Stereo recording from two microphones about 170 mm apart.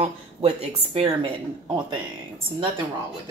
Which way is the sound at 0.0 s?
40° right (ahead or behind).